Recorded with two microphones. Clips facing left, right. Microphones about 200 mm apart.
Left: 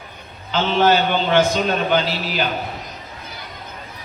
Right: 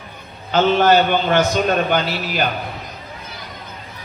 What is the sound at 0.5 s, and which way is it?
A man's voice, 50° right (ahead or behind).